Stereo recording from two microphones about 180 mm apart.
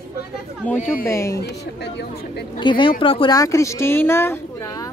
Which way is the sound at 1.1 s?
15° left (ahead or behind).